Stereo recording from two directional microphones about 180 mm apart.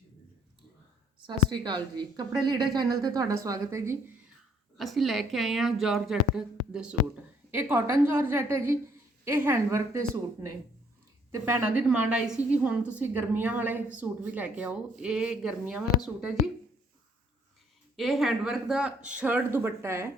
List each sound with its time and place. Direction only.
1.3 s a woman's voice: 25° right (ahead or behind)
4.8 s a woman's voice: centre (ahead or behind)
11.3 s a woman's voice: 15° right (ahead or behind)
17.9 s a woman's voice: centre (ahead or behind)